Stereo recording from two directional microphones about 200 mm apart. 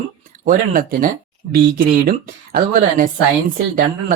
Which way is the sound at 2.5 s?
45° right (ahead or behind).